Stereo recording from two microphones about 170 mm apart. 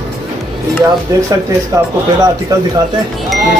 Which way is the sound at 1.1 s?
20° right (ahead or behind).